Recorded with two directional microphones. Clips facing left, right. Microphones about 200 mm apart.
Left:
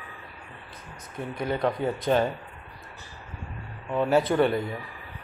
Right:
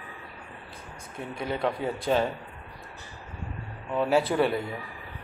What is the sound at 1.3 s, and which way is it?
Speech, centre (ahead or behind).